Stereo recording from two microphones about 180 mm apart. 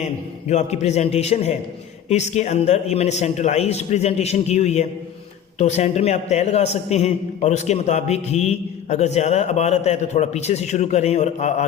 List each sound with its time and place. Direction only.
0.0 s a man's voice: 40° left (ahead or behind)